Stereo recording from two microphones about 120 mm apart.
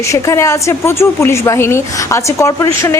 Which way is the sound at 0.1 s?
25° left (ahead or behind).